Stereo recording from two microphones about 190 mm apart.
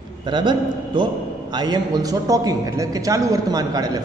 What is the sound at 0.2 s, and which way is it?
A man's voice, 25° right (ahead or behind).